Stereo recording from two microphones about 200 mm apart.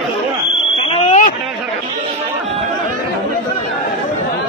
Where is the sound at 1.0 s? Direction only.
40° left (ahead or behind).